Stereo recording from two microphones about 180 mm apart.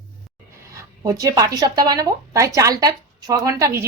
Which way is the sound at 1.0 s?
20° right (ahead or behind).